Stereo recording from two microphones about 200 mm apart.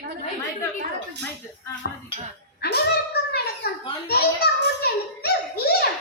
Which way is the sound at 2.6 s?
50° left (ahead or behind).